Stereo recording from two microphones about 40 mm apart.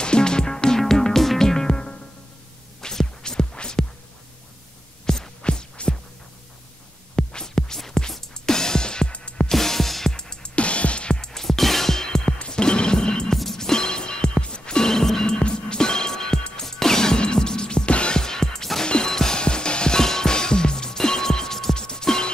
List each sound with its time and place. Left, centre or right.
0.0 s music: left
1.7 s music: left
5.0 s music: centre
5.4 s music: left
7.2 s music: centre
9.5 s music: centre
10.1 s music: centre
10.5 s music: left
11.1 s music: centre
15.3 s music: left
18.2 s music: centre
18.9 s music: left